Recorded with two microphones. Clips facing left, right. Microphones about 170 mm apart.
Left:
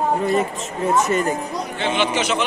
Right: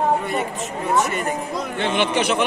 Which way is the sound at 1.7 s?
55° right (ahead or behind).